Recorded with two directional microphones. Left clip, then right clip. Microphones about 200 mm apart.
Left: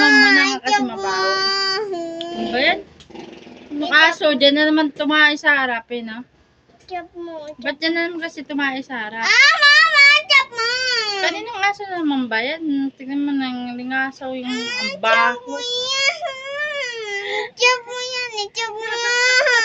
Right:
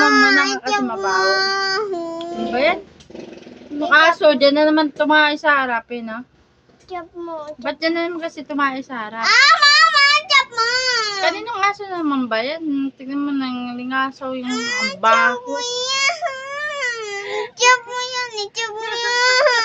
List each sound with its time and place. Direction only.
0.4 s a sound: 15° right (ahead or behind)
0.9 s baby cry: 15° right (ahead or behind)
2.2 s a sound: 15° right (ahead or behind)
2.5 s music: 5° right (ahead or behind)
3.8 s speech: 10° right (ahead or behind)
9.2 s child singing: 25° right (ahead or behind)
11.2 s speech: 5° right (ahead or behind)
14.5 s a child's voice: 20° right (ahead or behind)
15.4 s baby cry: 30° right (ahead or behind)
17.2 s child singing: 10° right (ahead or behind)
17.6 s child singing: 20° right (ahead or behind)
18.9 s speech: 10° right (ahead or behind)